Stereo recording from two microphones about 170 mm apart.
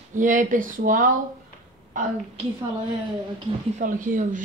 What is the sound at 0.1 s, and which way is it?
A woman's voice, 50° right (ahead or behind).